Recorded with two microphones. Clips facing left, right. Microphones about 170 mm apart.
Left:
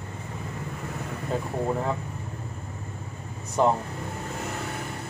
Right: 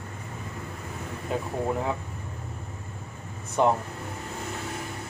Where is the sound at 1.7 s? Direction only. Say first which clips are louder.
Left 1 dB; 5° right (ahead or behind).